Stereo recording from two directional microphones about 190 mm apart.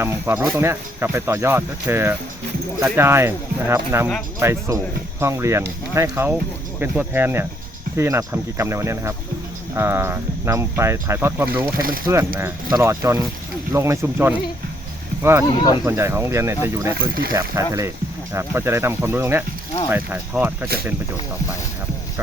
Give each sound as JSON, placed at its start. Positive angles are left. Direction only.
{"t": 0.0, "sound": "speech", "side_deg": -10}
{"t": 12.7, "sound": "speech", "side_deg": -15}
{"t": 15.4, "sound": "speech", "side_deg": 25}
{"t": 15.9, "sound": "speech", "side_deg": -15}